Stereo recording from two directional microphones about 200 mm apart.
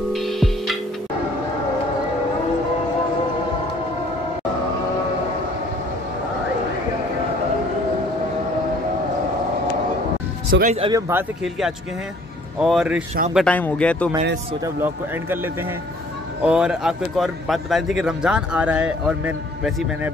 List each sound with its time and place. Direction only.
0.1 s music: centre (ahead or behind)
10.5 s speech: 45° right (ahead or behind)
10.8 s speech: 15° right (ahead or behind); by 14.1 s 5° left (ahead or behind)
14.6 s speech: 10° right (ahead or behind)